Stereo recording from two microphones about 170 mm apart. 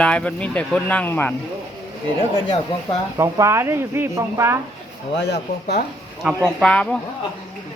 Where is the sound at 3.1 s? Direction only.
15° right (ahead or behind).